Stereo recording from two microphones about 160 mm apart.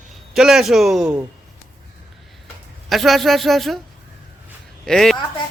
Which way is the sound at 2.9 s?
Centre (ahead or behind).